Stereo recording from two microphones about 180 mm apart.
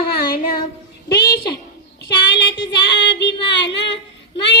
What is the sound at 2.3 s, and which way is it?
Child singing, 70° left (ahead or behind).